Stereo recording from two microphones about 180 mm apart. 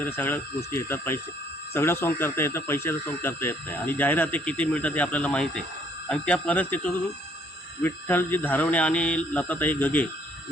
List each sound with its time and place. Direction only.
0.0 s speech: 10° left (ahead or behind)